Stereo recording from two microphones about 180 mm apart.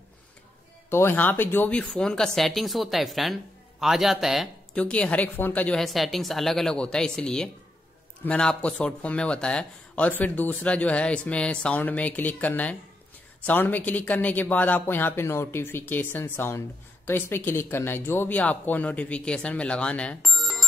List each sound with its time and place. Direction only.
0.8 s speech: 15° left (ahead or behind)